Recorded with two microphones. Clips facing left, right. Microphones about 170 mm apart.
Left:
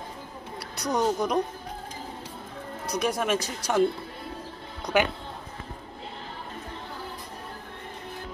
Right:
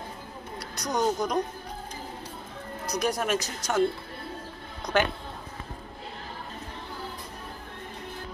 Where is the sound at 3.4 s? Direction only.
30° left (ahead or behind).